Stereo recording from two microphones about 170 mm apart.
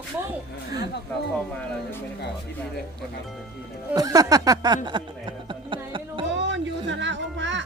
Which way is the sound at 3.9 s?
20° right (ahead or behind).